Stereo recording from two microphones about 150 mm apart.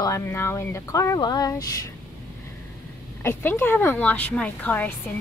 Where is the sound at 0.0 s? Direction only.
20° left (ahead or behind).